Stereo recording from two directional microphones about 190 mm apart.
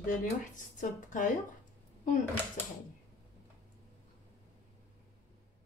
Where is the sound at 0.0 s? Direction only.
45° left (ahead or behind).